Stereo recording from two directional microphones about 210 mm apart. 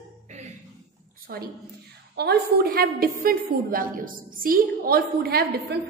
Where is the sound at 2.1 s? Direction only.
50° right (ahead or behind).